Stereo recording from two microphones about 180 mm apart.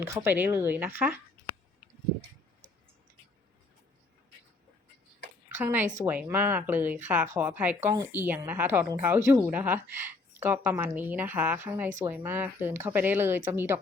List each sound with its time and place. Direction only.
0.0 s a woman's voice: 15° right (ahead or behind)
5.5 s a woman's voice: 10° right (ahead or behind)